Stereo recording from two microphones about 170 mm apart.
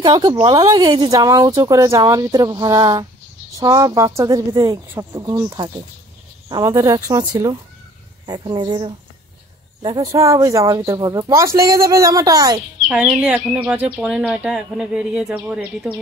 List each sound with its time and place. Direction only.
0.0 s speech: 25° right (ahead or behind)
12.8 s speech: 5° right (ahead or behind)